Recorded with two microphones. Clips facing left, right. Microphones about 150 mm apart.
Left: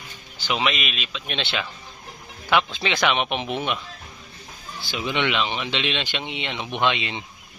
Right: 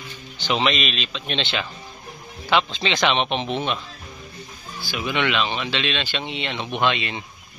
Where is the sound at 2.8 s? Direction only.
5° left (ahead or behind).